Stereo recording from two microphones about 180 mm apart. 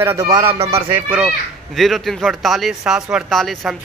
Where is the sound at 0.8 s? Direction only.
5° right (ahead or behind).